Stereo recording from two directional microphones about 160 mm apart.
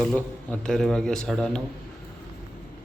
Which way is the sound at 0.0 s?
5° left (ahead or behind).